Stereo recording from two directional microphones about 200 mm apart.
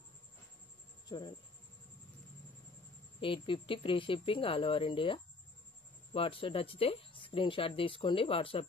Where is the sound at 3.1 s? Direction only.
25° left (ahead or behind).